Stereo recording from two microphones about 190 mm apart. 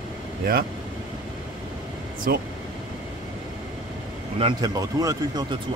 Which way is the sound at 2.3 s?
50° right (ahead or behind).